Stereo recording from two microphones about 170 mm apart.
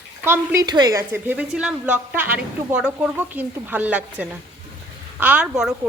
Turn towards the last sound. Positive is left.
turn(degrees=-5)  # may be behind; listen again after turning